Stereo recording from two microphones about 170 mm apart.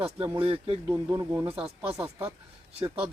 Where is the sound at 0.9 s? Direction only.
20° right (ahead or behind).